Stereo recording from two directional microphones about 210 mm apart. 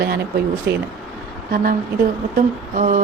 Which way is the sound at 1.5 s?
40° right (ahead or behind).